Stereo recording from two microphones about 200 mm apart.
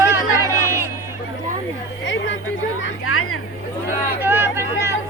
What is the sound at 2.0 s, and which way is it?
Chatter, 65° left (ahead or behind).